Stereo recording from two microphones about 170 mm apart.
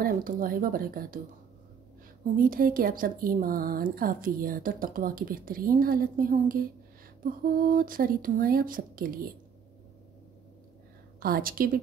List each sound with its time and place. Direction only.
0.0 s a woman's voice: 55° right (ahead or behind)
2.3 s a woman's voice: 55° right (ahead or behind)
11.1 s a woman's voice: 60° right (ahead or behind)